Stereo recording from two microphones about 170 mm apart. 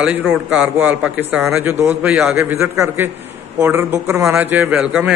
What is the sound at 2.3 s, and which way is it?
A man's voice, 15° right (ahead or behind).